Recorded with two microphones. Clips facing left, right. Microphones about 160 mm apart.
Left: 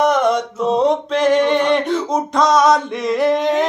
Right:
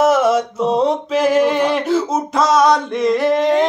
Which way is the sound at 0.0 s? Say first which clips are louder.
Right 2 dB; 5° right (ahead or behind).